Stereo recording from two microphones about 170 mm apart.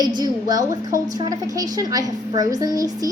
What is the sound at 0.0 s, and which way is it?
A woman's voice, 25° right (ahead or behind).